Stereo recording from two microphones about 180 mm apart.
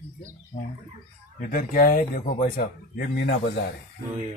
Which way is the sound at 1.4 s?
45° left (ahead or behind).